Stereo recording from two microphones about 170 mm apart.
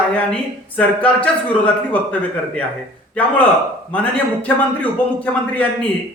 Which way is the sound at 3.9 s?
10° left (ahead or behind).